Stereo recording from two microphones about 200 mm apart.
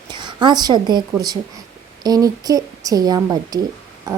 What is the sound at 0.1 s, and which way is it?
A woman's voice, 20° right (ahead or behind).